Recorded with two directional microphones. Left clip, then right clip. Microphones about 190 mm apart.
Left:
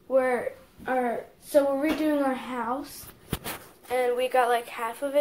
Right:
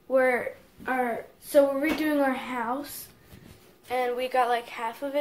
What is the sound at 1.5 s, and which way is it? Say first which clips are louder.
Speech: right 1 dB; 15° right (ahead or behind).